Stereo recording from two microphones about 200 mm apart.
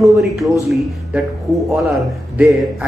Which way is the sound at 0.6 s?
Centre (ahead or behind).